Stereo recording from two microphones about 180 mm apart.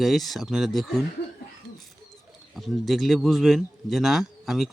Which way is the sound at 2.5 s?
Centre (ahead or behind).